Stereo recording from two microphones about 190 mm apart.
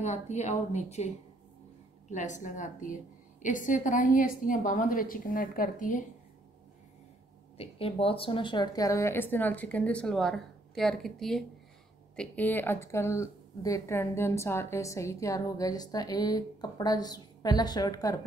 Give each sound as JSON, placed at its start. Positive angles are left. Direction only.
{"t": 0.0, "sound": "a woman's voice", "side_deg": 35}
{"t": 7.5, "sound": "speech", "side_deg": 30}